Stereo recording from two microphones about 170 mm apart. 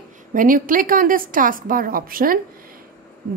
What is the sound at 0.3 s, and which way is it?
A woman's voice, 55° right (ahead or behind).